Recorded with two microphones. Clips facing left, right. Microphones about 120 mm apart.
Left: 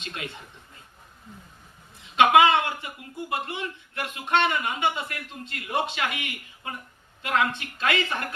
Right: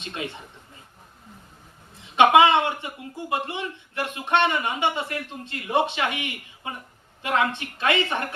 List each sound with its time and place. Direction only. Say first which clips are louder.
2.1 s speech: right 2 dB; 25° right (ahead or behind)